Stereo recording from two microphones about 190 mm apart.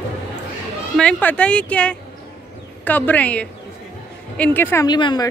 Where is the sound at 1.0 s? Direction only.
5° left (ahead or behind).